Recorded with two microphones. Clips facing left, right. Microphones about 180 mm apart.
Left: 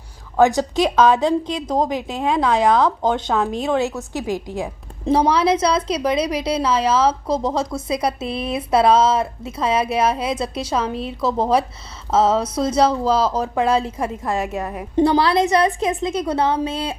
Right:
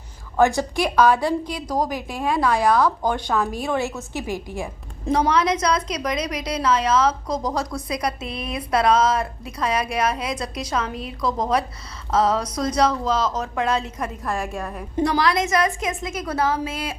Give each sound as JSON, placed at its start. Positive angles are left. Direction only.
{"t": 0.3, "sound": "a woman's voice", "side_deg": 15}
{"t": 5.1, "sound": "a woman's voice", "side_deg": 30}